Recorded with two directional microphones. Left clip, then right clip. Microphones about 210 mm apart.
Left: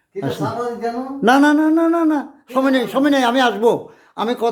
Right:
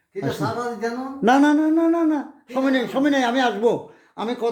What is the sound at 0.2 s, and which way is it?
A man's voice, 5° left (ahead or behind).